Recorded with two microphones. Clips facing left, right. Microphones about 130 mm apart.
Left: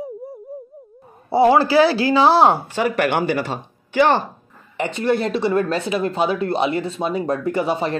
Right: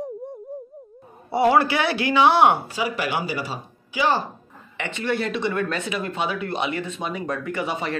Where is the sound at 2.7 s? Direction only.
60° left (ahead or behind).